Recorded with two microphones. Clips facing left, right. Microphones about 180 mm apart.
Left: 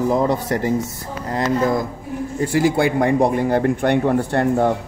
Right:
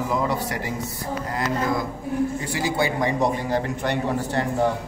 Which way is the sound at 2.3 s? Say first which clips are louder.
Left 7 dB; 50° left (ahead or behind).